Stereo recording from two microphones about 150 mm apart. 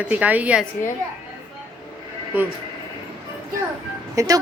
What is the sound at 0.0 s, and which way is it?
Speech, 10° right (ahead or behind).